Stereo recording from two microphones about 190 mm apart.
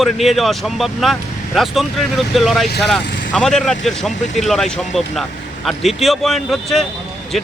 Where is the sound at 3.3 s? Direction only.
Centre (ahead or behind).